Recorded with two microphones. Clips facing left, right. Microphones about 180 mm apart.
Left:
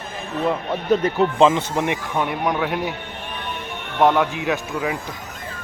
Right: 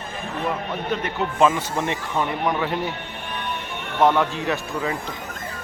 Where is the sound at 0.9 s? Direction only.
35° left (ahead or behind).